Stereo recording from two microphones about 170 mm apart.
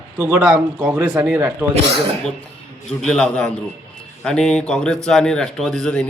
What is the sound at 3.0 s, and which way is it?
Speech, 5° left (ahead or behind).